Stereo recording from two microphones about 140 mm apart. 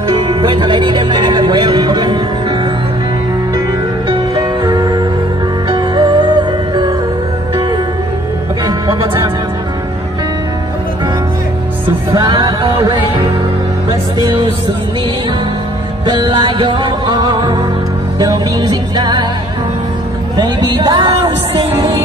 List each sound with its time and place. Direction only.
0.1 s music: 35° right (ahead or behind)
4.4 s music: 30° right (ahead or behind)
8.6 s music: 30° right (ahead or behind)
12.1 s music: 30° right (ahead or behind)
16.3 s music: 40° right (ahead or behind)
20.3 s a sound: 30° right (ahead or behind)